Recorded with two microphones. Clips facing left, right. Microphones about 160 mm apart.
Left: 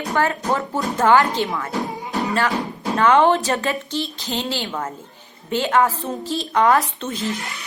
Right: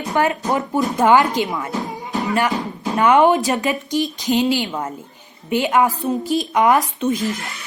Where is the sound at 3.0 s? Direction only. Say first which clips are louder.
Right 2 dB; 15° right (ahead or behind).